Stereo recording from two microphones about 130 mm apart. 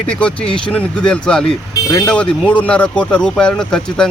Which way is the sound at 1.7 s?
25° left (ahead or behind).